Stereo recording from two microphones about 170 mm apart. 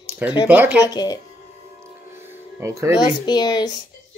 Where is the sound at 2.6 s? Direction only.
15° right (ahead or behind).